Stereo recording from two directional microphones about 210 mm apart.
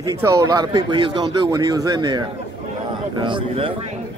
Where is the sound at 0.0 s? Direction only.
15° right (ahead or behind).